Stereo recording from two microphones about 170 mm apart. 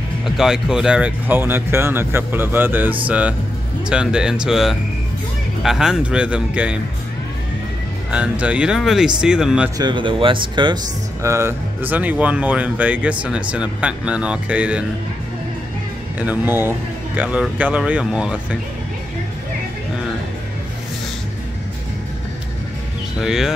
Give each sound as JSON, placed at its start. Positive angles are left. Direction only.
{"t": 0.2, "sound": "speech", "side_deg": 0}
{"t": 8.1, "sound": "speech", "side_deg": -5}
{"t": 9.8, "sound": "speech", "side_deg": -25}
{"t": 11.2, "sound": "speech", "side_deg": -15}
{"t": 16.2, "sound": "speech", "side_deg": -10}
{"t": 23.2, "sound": "speech", "side_deg": -5}